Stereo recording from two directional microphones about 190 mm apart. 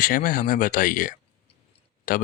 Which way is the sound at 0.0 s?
45° left (ahead or behind).